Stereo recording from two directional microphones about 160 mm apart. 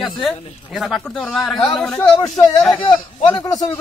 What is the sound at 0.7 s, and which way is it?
Speech, centre (ahead or behind).